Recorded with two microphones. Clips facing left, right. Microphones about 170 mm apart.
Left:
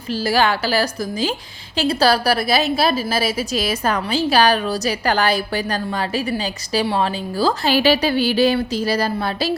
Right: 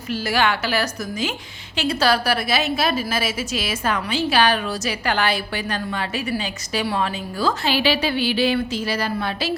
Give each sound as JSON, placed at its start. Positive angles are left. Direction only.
{"t": 0.1, "sound": "a woman's voice", "side_deg": 30}